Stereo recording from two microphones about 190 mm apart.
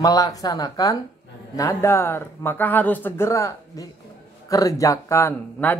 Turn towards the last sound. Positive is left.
turn(degrees=10)  # may be behind; listen again after turning